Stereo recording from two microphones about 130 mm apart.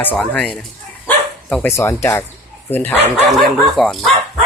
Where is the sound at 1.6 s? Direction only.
20° left (ahead or behind).